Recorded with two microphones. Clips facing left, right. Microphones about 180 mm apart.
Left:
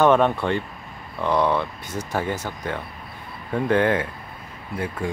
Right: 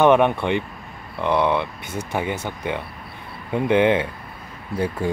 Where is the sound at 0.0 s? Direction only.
15° right (ahead or behind).